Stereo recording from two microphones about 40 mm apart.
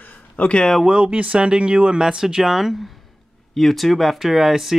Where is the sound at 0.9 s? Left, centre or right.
Right.